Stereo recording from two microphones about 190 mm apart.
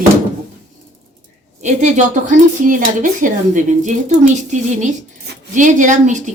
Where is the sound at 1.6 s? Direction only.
40° right (ahead or behind).